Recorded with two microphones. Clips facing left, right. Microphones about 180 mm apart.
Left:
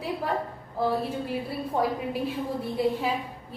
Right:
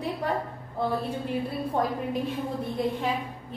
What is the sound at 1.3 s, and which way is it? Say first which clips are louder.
A woman's voice: right 1 dB; 5° left (ahead or behind).